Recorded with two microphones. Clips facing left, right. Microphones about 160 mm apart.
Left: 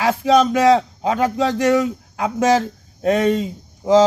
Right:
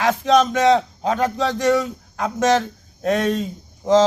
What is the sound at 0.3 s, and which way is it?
A man's voice, 10° left (ahead or behind).